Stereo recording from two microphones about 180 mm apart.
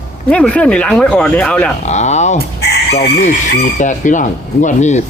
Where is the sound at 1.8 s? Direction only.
40° left (ahead or behind).